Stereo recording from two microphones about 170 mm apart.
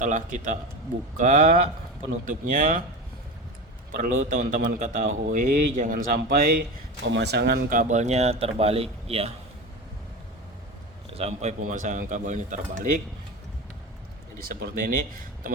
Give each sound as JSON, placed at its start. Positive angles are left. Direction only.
{"t": 0.0, "sound": "speech", "side_deg": -50}
{"t": 3.9, "sound": "a man's voice", "side_deg": -55}
{"t": 7.7, "sound": "speech", "side_deg": -45}
{"t": 11.1, "sound": "speech", "side_deg": -35}
{"t": 14.4, "sound": "a man's voice", "side_deg": -55}